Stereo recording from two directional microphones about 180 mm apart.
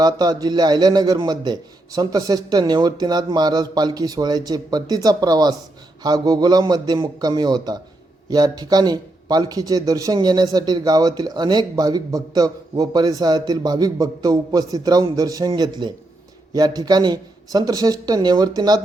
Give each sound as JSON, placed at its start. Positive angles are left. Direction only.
{"t": 0.0, "sound": "speech", "side_deg": -20}